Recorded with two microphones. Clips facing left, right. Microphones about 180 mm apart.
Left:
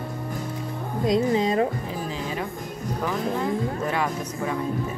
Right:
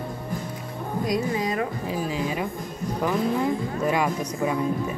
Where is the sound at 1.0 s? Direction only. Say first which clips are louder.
Left 5 dB; 25° left (ahead or behind).